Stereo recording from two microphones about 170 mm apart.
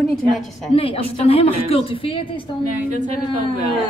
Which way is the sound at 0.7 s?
35° left (ahead or behind).